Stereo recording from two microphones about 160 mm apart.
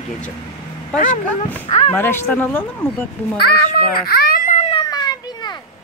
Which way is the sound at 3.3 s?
75° left (ahead or behind).